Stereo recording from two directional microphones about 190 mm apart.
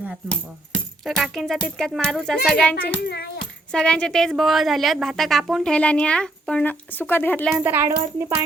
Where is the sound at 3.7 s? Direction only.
5° left (ahead or behind).